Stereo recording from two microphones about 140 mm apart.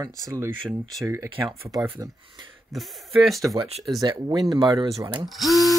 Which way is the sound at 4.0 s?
30° right (ahead or behind).